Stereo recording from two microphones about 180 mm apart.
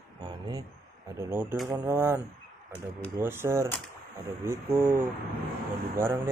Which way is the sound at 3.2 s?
15° right (ahead or behind).